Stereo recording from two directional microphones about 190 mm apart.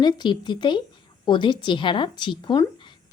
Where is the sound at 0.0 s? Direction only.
25° left (ahead or behind).